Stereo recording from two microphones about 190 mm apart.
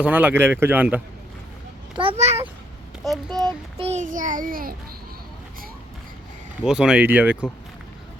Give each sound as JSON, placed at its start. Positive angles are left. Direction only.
{"t": 0.0, "sound": "speech", "side_deg": -5}
{"t": 2.0, "sound": "a child's voice", "side_deg": -30}
{"t": 3.0, "sound": "a child's voice", "side_deg": 0}
{"t": 3.3, "sound": "child singing", "side_deg": -20}
{"t": 3.8, "sound": "child singing", "side_deg": -40}
{"t": 6.7, "sound": "speech", "side_deg": -5}